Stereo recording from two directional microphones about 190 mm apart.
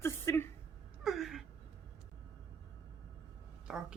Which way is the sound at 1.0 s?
Centre (ahead or behind).